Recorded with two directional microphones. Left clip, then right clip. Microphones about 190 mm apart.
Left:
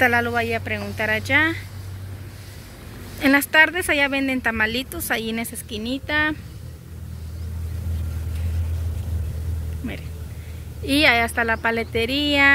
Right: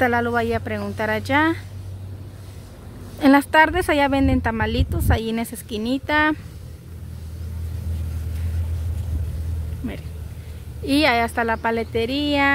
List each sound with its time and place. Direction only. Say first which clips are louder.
0.0 s speech: left 1 dB; 20° right (ahead or behind)
3.2 s speech: right 1 dB; 25° right (ahead or behind)
10.9 s speech: left 1 dB; 25° right (ahead or behind)